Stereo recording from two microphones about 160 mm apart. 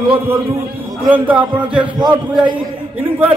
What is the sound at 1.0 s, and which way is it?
Speech, 10° right (ahead or behind).